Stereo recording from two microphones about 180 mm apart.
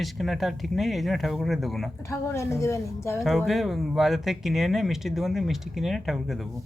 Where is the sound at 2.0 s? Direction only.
15° left (ahead or behind).